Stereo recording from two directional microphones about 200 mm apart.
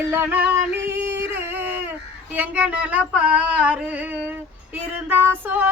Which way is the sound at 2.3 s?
10° right (ahead or behind).